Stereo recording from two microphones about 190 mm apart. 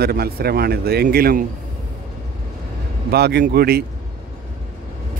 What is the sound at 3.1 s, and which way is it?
Speech, 55° right (ahead or behind).